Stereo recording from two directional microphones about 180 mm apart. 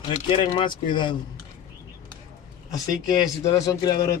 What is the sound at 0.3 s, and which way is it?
Speech, 25° left (ahead or behind).